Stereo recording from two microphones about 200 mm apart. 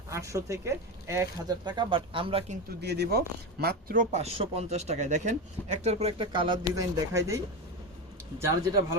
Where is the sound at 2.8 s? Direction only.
55° right (ahead or behind); by 6.6 s 25° right (ahead or behind).